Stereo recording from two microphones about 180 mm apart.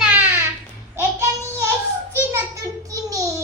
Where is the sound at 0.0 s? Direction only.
10° right (ahead or behind).